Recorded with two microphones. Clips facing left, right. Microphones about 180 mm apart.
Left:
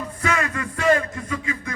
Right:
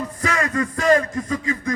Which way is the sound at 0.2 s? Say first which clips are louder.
Right 2 dB; 35° right (ahead or behind).